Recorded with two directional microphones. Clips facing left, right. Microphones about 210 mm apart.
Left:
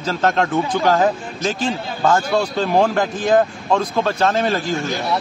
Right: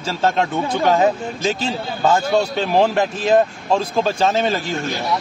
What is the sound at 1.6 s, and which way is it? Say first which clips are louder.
Speech: left 2 dB; 5° right (ahead or behind).